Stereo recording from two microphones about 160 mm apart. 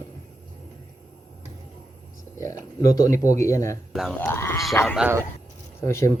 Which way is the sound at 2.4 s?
20° left (ahead or behind).